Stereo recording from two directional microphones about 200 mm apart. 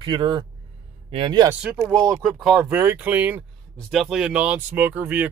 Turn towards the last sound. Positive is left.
turn(degrees=-10)  # may be behind; listen again after turning